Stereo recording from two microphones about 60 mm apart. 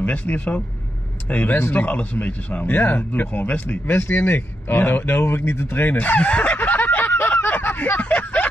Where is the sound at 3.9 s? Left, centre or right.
Left.